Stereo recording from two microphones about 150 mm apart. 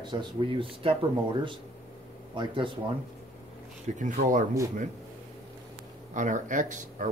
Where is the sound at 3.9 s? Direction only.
55° right (ahead or behind).